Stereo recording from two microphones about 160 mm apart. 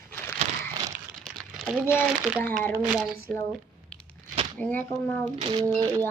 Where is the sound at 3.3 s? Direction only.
5° left (ahead or behind).